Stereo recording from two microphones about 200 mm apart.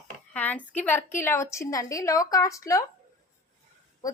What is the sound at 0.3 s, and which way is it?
A woman's voice, 10° left (ahead or behind).